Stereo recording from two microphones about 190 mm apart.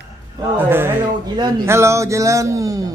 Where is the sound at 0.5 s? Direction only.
10° right (ahead or behind).